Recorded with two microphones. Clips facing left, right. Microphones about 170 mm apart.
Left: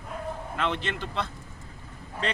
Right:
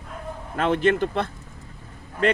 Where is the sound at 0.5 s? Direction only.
45° right (ahead or behind).